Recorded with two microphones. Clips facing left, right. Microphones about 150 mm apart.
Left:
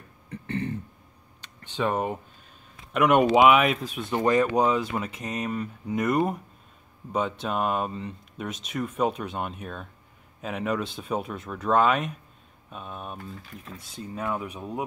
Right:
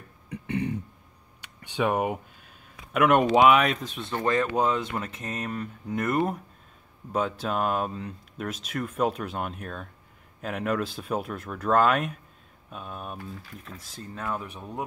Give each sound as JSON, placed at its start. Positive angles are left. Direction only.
{"t": 0.3, "sound": "beatboxing", "side_deg": -15}
{"t": 1.4, "sound": "a sound", "side_deg": -10}
{"t": 2.9, "sound": "speech", "side_deg": 0}